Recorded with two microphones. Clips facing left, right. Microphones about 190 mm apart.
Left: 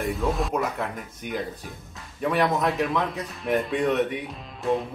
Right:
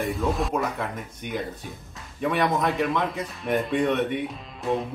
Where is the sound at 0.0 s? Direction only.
Centre (ahead or behind).